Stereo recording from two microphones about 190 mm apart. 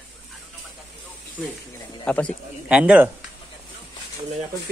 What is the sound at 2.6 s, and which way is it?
Speech, 5° right (ahead or behind).